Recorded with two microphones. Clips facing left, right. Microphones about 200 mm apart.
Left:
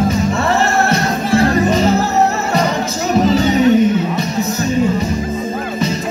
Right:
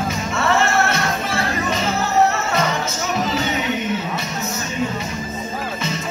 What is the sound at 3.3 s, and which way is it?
Music, 35° left (ahead or behind).